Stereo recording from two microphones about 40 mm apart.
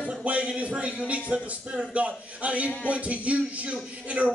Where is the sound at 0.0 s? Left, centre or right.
Right.